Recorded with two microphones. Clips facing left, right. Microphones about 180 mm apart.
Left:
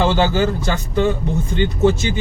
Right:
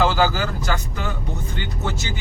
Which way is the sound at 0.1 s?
25° left (ahead or behind).